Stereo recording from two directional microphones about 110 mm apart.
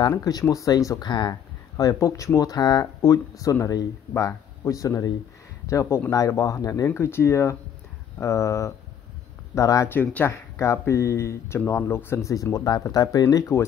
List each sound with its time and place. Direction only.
0.2 s speech: 35° left (ahead or behind)
1.8 s speech: 30° left (ahead or behind)